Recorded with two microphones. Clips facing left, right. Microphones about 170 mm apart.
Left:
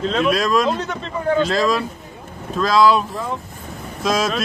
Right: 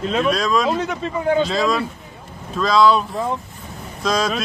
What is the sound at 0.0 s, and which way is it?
Speech, centre (ahead or behind).